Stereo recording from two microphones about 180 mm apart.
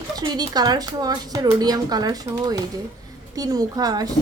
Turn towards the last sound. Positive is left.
turn(degrees=-20)  # may be behind; listen again after turning